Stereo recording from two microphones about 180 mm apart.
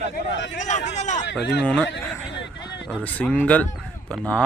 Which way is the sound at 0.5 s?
40° left (ahead or behind).